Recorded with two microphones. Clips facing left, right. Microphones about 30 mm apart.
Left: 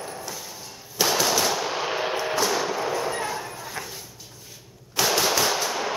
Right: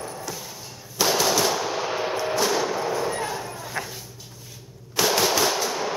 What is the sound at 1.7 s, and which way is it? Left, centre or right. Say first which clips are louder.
Gunshot: even; left.